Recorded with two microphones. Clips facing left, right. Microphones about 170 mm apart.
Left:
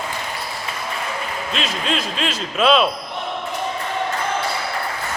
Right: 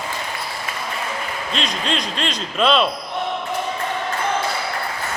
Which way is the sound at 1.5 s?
5° left (ahead or behind).